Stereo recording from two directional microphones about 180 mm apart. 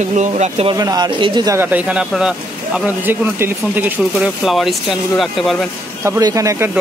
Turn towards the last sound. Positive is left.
turn(degrees=-15)  # may be behind; listen again after turning